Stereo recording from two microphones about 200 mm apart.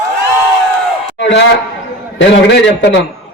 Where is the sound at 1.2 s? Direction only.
60° left (ahead or behind).